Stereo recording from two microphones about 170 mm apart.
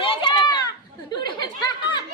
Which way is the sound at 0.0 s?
30° left (ahead or behind).